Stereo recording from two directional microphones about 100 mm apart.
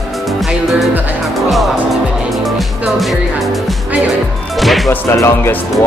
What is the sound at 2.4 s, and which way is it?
Music, centre (ahead or behind).